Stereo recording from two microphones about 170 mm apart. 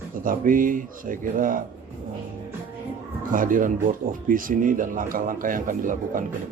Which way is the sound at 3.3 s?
55° right (ahead or behind).